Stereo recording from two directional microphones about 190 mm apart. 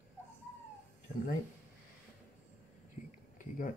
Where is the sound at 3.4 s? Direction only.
45° left (ahead or behind).